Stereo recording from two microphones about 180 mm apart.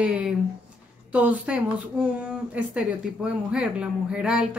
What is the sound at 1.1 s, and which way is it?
Speech, 10° right (ahead or behind).